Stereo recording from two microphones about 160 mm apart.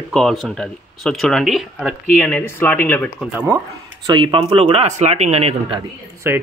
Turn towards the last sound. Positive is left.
turn(degrees=-15)  # may be behind; listen again after turning